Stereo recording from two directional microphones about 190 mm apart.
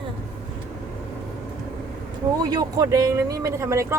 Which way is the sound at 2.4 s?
20° right (ahead or behind).